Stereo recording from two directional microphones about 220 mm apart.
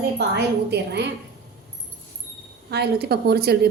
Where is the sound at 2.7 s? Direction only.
45° right (ahead or behind).